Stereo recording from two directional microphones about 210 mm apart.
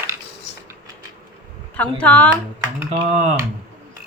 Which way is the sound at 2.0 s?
5° left (ahead or behind).